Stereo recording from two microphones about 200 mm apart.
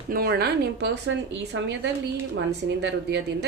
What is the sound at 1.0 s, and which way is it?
Speech, 65° right (ahead or behind).